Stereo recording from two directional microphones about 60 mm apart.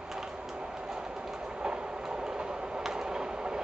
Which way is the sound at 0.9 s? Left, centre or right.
Centre.